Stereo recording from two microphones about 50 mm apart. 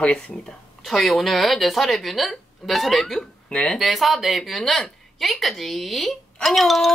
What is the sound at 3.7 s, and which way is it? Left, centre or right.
A woman's voice, centre.